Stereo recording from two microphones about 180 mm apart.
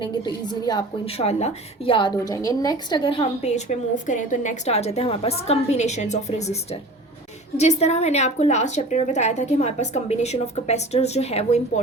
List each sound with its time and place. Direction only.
0.0 s a woman's voice: 25° left (ahead or behind)